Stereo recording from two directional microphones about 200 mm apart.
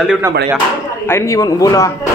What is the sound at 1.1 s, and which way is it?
Speech, 15° left (ahead or behind).